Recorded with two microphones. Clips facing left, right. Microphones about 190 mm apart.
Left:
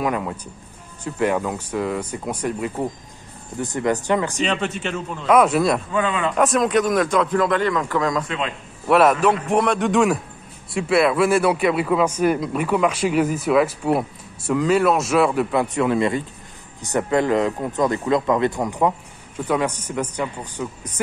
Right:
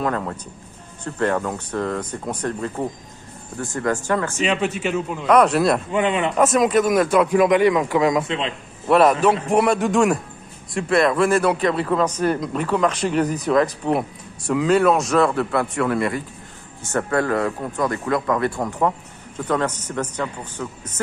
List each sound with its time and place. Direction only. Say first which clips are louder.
0.0 s a man's voice: even; 10° left (ahead or behind)
4.4 s a man's voice: right 2 dB; 10° right (ahead or behind)
5.3 s speech: even; centre (ahead or behind)
5.9 s a man's voice: right 2 dB; 20° right (ahead or behind)
6.3 s a man's voice: right 1 dB; centre (ahead or behind); by 8.5 s 25° right (ahead or behind)
8.8 s a man's voice: even; centre (ahead or behind)